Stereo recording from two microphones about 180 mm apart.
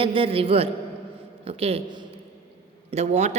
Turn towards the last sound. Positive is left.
turn(degrees=-40)  # may be behind; listen again after turning